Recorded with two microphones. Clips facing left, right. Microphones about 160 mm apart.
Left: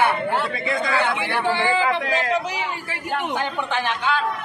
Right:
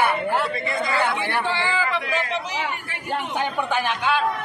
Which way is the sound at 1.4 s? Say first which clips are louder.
Left 4 dB; 15° left (ahead or behind).